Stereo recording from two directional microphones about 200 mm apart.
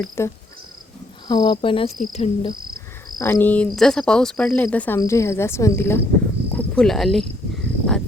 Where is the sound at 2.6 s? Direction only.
45° right (ahead or behind).